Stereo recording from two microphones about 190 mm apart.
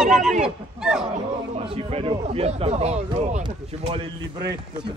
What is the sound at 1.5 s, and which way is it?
A man's voice, 30° right (ahead or behind).